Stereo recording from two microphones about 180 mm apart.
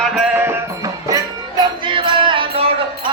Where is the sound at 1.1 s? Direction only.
25° right (ahead or behind).